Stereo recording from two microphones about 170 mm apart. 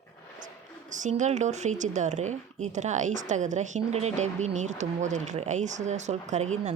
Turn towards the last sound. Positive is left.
turn(degrees=-40)  # may be behind; listen again after turning